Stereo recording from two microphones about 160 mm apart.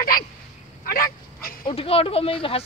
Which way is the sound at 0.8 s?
65° left (ahead or behind).